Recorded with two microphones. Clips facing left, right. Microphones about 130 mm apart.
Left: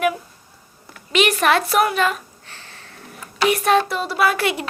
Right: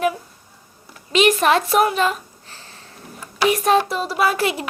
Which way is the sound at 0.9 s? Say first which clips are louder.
Right 2 dB; 30° right (ahead or behind).